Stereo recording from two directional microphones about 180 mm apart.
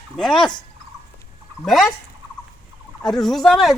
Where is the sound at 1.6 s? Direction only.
Centre (ahead or behind).